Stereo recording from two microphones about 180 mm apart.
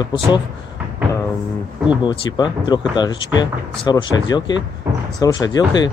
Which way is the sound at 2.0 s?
25° left (ahead or behind).